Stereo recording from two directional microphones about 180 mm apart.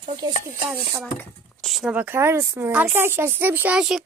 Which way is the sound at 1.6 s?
Centre (ahead or behind).